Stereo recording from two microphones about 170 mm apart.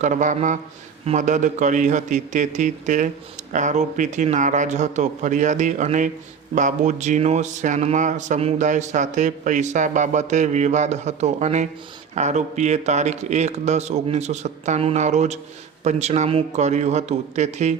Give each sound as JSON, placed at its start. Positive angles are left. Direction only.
{"t": 0.0, "sound": "speech", "side_deg": -45}